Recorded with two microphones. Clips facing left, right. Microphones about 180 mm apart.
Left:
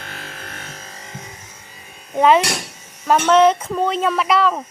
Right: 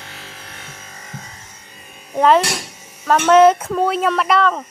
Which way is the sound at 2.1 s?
5° left (ahead or behind).